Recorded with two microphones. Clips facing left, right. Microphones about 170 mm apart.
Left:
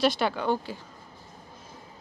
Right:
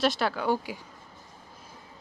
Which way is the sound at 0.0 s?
Centre (ahead or behind).